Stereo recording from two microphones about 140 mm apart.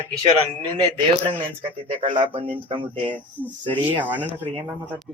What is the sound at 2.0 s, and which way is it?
Speech, 35° right (ahead or behind).